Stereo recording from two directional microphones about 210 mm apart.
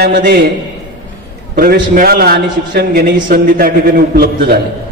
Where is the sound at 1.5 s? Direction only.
45° right (ahead or behind).